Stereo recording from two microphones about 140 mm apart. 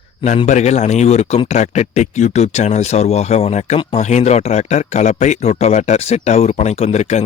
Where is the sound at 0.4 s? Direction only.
55° left (ahead or behind).